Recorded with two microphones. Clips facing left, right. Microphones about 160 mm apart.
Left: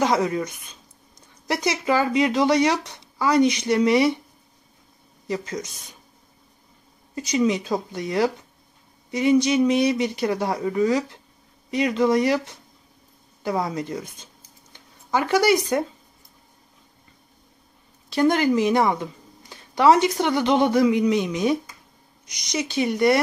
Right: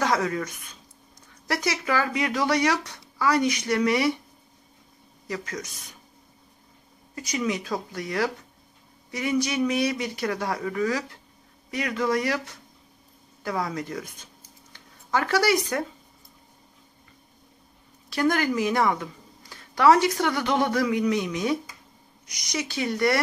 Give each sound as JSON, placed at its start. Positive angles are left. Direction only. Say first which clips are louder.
{"t": 0.0, "sound": "speech", "louder": "left 4 dB", "side_deg": 20}
{"t": 5.3, "sound": "speech", "louder": "left 5 dB", "side_deg": 25}
{"t": 7.2, "sound": "speech", "louder": "left 6 dB", "side_deg": 25}
{"t": 13.4, "sound": "speech", "louder": "left 4 dB", "side_deg": 25}
{"t": 18.1, "sound": "speech", "louder": "left 5 dB", "side_deg": 25}